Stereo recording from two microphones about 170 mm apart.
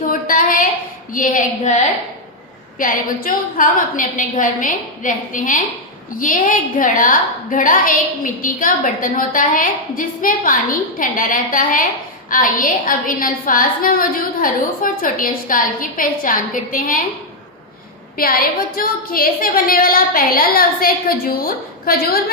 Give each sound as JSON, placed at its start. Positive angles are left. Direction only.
{"t": 0.1, "sound": "a sound", "side_deg": 55}
{"t": 1.1, "sound": "a woman's voice", "side_deg": 50}
{"t": 18.2, "sound": "a woman's voice", "side_deg": 60}